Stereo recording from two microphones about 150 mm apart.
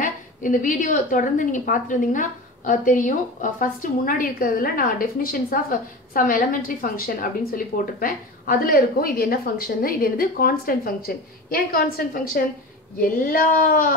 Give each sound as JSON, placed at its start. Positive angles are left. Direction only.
{"t": 0.0, "sound": "a woman's voice", "side_deg": 60}